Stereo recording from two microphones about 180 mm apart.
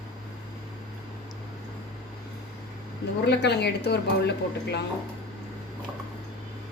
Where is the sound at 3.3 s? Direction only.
70° left (ahead or behind).